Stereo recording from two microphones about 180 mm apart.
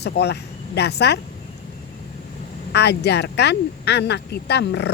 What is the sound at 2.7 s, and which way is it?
Speech, 65° left (ahead or behind).